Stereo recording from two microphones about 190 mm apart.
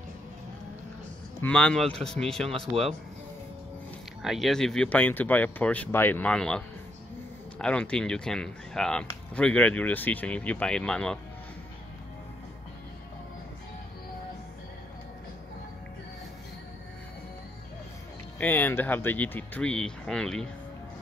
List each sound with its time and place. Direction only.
1.4 s speech: 5° left (ahead or behind)
2.7 s speech: 30° right (ahead or behind)
4.2 s speech: centre (ahead or behind)
18.4 s speech: 10° left (ahead or behind)